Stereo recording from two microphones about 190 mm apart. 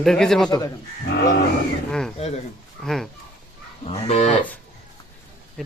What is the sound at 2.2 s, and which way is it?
Livestock, 35° left (ahead or behind).